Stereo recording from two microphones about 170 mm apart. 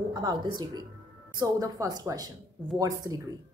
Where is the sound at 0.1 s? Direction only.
25° right (ahead or behind).